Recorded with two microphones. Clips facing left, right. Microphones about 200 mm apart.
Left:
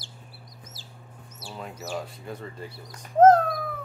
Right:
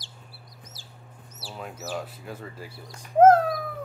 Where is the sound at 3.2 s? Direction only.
10° right (ahead or behind).